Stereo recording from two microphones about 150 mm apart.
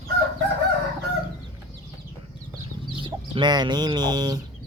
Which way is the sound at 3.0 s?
35° right (ahead or behind).